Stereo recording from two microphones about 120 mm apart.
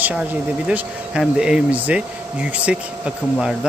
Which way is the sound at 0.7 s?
10° right (ahead or behind).